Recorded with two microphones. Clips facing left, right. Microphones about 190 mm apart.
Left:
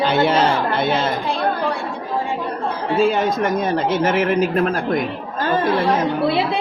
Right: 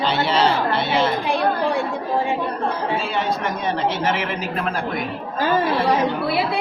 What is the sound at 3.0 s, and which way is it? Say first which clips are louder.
Speech: left 5 dB; 45° left (ahead or behind).